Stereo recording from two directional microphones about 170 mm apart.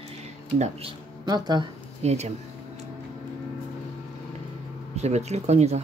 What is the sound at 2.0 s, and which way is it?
Speech, 40° right (ahead or behind).